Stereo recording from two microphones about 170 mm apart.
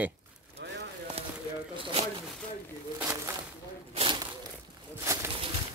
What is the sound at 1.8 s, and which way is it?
Zipper, 30° right (ahead or behind).